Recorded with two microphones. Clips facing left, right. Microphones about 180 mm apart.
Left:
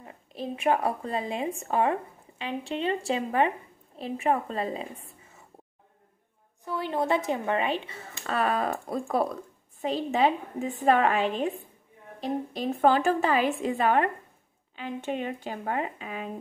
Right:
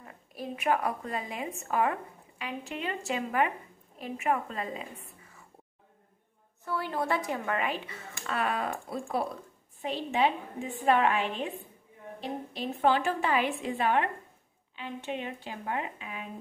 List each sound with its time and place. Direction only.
0.0 s a woman's voice: 25° left (ahead or behind)
6.6 s a woman's voice: 20° left (ahead or behind); by 16.3 s 40° left (ahead or behind)